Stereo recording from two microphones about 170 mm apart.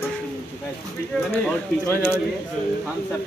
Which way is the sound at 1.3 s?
15° left (ahead or behind).